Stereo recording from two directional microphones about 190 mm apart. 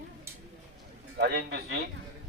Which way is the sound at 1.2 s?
60° right (ahead or behind).